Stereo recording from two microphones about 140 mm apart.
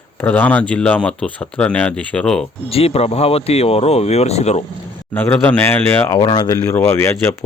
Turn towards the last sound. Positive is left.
turn(degrees=20)  # may be behind; listen again after turning